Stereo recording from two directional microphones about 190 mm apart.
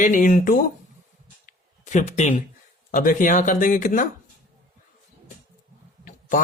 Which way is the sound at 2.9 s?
45° left (ahead or behind).